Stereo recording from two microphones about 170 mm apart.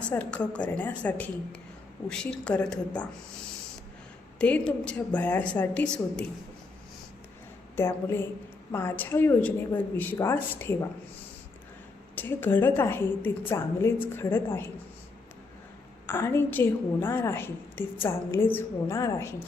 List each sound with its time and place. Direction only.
0.1 s a woman's voice: 10° left (ahead or behind)
4.4 s a woman's voice: 10° left (ahead or behind)
7.8 s a woman's voice: 15° left (ahead or behind)
12.1 s a woman's voice: 10° left (ahead or behind)
16.0 s a woman's voice: 15° left (ahead or behind)